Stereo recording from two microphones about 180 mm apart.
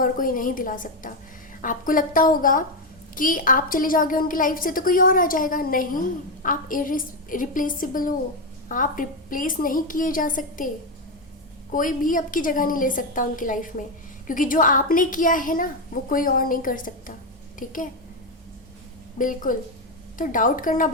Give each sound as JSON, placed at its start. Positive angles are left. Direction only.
{"t": 0.0, "sound": "a woman's voice", "side_deg": 50}
{"t": 11.7, "sound": "a woman's voice", "side_deg": 50}
{"t": 19.2, "sound": "a woman's voice", "side_deg": 45}